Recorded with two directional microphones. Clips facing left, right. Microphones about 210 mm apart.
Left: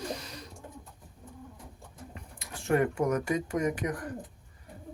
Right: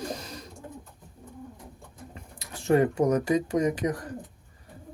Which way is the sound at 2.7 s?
25° right (ahead or behind).